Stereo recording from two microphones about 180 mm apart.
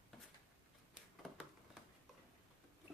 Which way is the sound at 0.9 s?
Centre (ahead or behind).